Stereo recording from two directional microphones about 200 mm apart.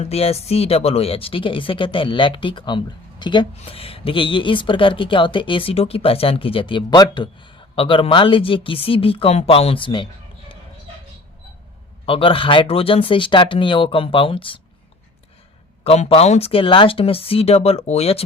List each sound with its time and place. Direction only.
0.0 s speech: 30° left (ahead or behind)
12.0 s speech: 25° left (ahead or behind)
15.8 s speech: 30° left (ahead or behind)